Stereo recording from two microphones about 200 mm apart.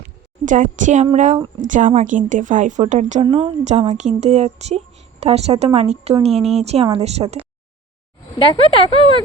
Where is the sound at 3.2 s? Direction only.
25° right (ahead or behind).